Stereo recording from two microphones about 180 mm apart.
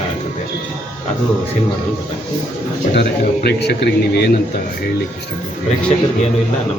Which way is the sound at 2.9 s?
65° left (ahead or behind).